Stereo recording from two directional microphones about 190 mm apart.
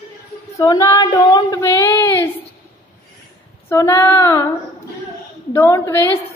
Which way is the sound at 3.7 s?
15° left (ahead or behind).